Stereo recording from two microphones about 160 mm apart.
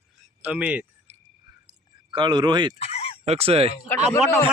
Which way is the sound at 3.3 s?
40° right (ahead or behind).